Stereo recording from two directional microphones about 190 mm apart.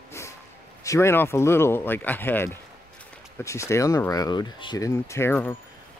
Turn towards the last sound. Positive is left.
turn(degrees=10)  # may be behind; listen again after turning